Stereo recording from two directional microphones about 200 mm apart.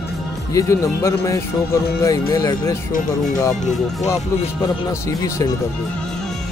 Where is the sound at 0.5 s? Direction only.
15° left (ahead or behind).